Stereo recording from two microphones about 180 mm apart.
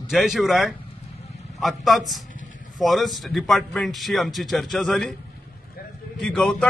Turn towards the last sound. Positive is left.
turn(degrees=5)  # may be behind; listen again after turning